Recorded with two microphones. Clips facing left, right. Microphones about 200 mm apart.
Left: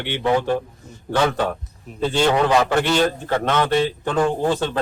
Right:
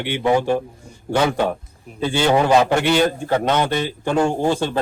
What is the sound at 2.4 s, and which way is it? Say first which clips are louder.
A man's voice: right 2 dB; 15° right (ahead or behind).